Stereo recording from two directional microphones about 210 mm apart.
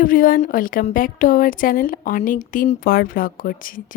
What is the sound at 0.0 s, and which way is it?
Speech, 40° left (ahead or behind).